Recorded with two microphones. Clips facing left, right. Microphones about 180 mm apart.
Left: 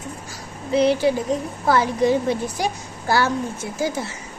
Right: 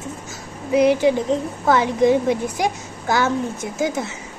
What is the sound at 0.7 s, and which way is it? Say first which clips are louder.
A woman's voice: right 2 dB; 15° right (ahead or behind).